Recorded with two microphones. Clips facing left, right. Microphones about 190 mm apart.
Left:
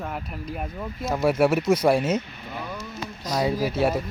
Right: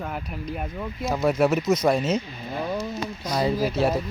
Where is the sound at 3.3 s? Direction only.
Centre (ahead or behind).